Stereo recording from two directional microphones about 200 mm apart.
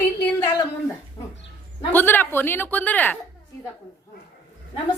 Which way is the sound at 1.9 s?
10° left (ahead or behind).